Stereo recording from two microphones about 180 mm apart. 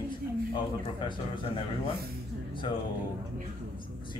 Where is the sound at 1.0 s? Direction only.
25° left (ahead or behind).